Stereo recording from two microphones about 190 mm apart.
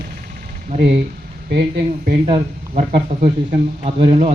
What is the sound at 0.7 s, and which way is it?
Speech, 30° right (ahead or behind).